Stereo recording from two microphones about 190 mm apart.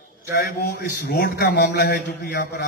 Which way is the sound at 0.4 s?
55° left (ahead or behind).